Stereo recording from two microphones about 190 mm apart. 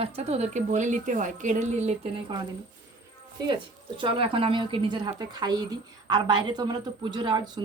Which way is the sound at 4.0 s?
30° right (ahead or behind).